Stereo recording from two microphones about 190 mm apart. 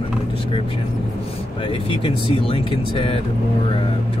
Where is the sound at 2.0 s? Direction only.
30° left (ahead or behind).